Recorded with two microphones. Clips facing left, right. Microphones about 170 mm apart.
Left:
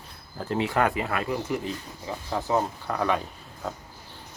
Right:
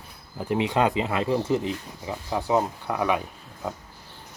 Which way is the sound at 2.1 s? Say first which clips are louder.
Right 2 dB; 15° right (ahead or behind).